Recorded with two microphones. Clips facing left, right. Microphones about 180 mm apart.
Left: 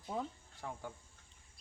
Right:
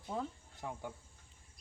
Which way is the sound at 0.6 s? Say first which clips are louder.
Right 2 dB; 15° right (ahead or behind).